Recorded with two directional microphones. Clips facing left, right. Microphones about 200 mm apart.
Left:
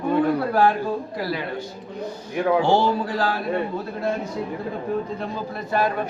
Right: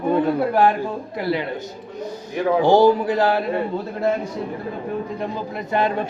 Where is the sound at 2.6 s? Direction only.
15° right (ahead or behind).